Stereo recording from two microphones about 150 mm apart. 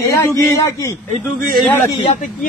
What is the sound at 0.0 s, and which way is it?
Speech, 20° left (ahead or behind).